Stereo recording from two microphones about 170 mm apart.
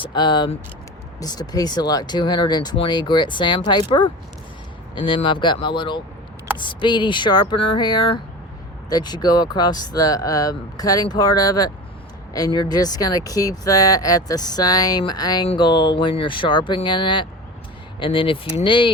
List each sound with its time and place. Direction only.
0.0 s speech: 25° left (ahead or behind)